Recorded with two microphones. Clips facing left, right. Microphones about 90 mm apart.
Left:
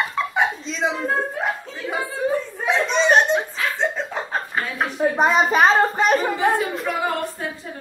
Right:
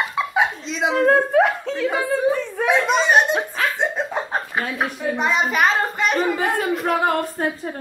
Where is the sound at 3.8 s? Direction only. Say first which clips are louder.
Right 1 dB; 15° right (ahead or behind).